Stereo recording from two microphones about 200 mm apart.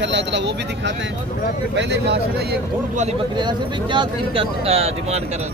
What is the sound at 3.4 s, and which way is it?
Speech, 25° right (ahead or behind).